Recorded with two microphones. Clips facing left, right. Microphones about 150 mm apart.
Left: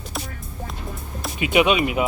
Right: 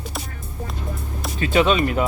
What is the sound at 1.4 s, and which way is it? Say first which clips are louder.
Speech: even; 10° left (ahead or behind).